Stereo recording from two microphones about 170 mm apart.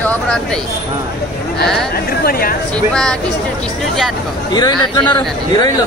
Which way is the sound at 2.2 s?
60° left (ahead or behind).